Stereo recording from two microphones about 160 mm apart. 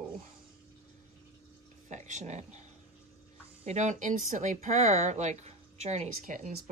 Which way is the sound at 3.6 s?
45° right (ahead or behind).